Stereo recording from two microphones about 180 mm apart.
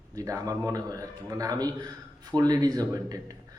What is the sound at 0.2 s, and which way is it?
Speech, 20° right (ahead or behind).